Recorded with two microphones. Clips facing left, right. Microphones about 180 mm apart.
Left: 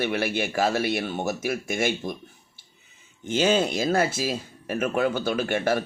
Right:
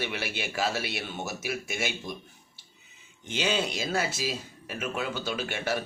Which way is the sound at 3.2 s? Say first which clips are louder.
Left 7 dB; 45° left (ahead or behind).